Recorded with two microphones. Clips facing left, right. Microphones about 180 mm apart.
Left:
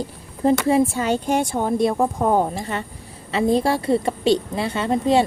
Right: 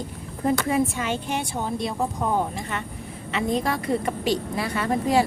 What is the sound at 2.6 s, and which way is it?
A woman's voice, 35° left (ahead or behind).